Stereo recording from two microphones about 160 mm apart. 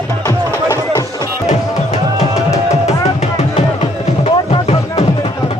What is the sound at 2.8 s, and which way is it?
Music, 45° left (ahead or behind).